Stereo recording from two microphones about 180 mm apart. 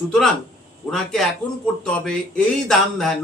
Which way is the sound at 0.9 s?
5° left (ahead or behind).